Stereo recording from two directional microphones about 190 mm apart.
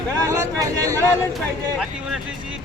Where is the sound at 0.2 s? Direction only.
15° right (ahead or behind).